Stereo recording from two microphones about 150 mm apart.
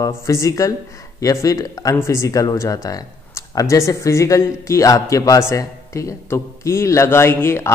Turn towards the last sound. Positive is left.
turn(degrees=15)  # may be behind; listen again after turning